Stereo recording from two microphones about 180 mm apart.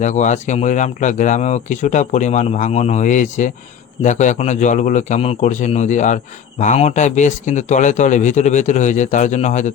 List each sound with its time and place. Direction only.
0.0 s a man's voice: 40° left (ahead or behind)